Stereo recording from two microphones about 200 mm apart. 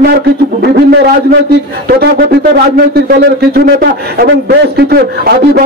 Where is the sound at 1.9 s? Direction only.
50° right (ahead or behind).